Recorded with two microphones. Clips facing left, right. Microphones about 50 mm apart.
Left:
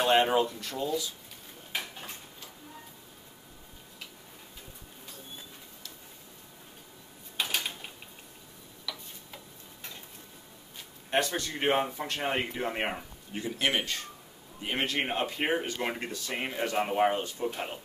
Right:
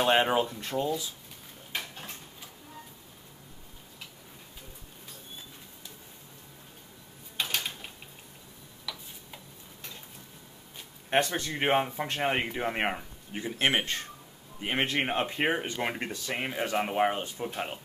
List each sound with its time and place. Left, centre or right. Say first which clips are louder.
0.0 s speech: even; centre
0.6 s a man's voice: right 2 dB; right
1.7 s dishes: even; centre
7.3 s a sound: even; centre
8.9 s tick-tock: even; centre
11.1 s a man's voice: right 2 dB; right
13.4 s a man's voice: right 2 dB; right
15.0 s a man's voice: right 2 dB; centre
16.3 s speech: even; centre